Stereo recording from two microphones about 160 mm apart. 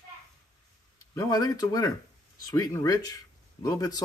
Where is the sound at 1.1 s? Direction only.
20° left (ahead or behind).